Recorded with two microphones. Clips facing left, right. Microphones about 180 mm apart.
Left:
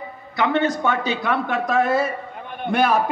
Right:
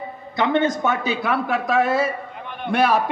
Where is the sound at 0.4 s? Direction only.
20° right (ahead or behind).